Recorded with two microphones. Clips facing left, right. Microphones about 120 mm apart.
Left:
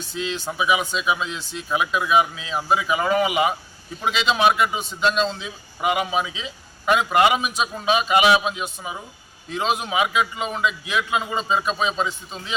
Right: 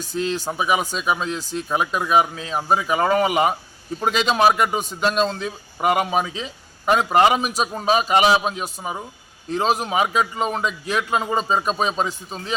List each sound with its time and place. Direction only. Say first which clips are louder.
0.0 s a man's voice: right 4 dB; 45° right (ahead or behind)